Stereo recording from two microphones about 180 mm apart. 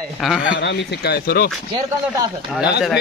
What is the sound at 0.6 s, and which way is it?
Speech, 70° left (ahead or behind).